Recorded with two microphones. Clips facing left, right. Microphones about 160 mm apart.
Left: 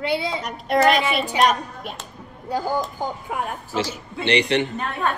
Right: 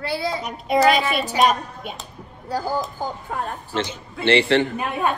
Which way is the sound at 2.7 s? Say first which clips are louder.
Left 1 dB; 15° left (ahead or behind).